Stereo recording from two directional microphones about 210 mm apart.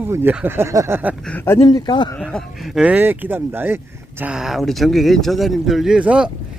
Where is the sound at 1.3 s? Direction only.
10° left (ahead or behind).